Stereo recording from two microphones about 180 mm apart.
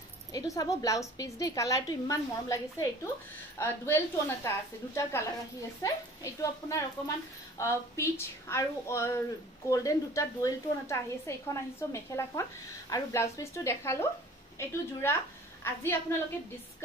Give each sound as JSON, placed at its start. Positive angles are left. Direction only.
{"t": 0.3, "sound": "a woman's voice", "side_deg": 20}